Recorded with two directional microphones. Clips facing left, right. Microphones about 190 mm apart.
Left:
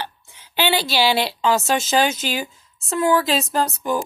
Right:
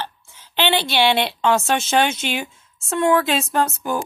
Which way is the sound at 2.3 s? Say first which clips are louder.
Even; centre (ahead or behind).